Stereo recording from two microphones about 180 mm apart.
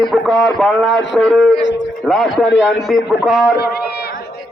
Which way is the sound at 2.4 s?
90° left.